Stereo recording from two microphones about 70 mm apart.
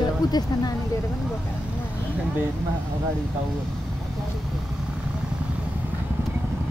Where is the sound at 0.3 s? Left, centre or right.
Left.